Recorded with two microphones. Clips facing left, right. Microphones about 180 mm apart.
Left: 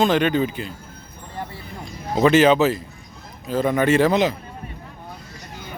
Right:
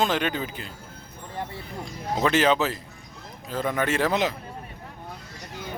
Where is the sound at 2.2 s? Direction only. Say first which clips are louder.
Left 7 dB; 5° left (ahead or behind).